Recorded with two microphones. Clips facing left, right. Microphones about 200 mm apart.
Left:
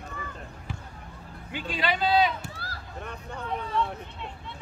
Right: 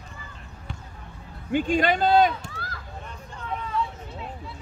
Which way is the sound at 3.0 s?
60° left (ahead or behind).